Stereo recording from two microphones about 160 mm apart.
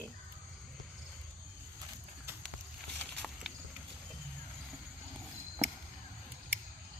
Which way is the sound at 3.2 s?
Centre (ahead or behind).